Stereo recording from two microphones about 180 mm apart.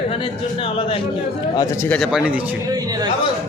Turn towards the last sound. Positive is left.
turn(degrees=-20)  # may be behind; listen again after turning